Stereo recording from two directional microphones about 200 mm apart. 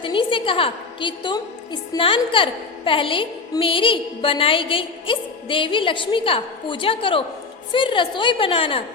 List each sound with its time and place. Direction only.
0.0 s a woman's voice: 25° left (ahead or behind)